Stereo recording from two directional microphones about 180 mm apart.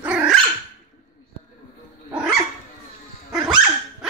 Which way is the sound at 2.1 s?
5° right (ahead or behind).